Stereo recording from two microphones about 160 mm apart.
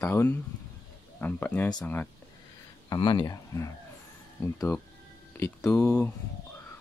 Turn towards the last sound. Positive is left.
turn(degrees=10)  # may be behind; listen again after turning